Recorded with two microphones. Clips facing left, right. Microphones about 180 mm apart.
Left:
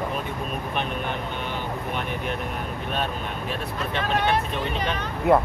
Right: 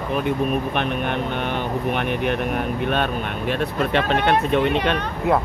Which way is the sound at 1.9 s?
70° right (ahead or behind).